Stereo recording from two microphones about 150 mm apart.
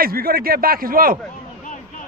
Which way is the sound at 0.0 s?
80° right.